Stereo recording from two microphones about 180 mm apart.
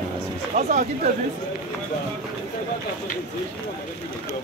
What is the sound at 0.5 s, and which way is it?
Speech, 45° right (ahead or behind).